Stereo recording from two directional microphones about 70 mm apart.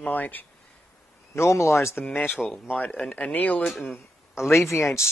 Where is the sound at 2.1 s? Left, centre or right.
Left.